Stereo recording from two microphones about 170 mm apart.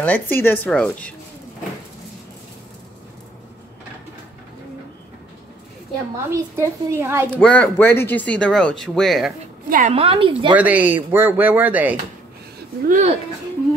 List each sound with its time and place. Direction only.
0.0 s speech: 10° left (ahead or behind)
6.3 s speech: 15° right (ahead or behind)
7.3 s speech: 10° left (ahead or behind)
9.7 s a woman's voice: 50° right (ahead or behind)
9.9 s a woman's voice: 35° right (ahead or behind)
10.5 s speech: 10° right (ahead or behind)
12.8 s speech: 45° right (ahead or behind)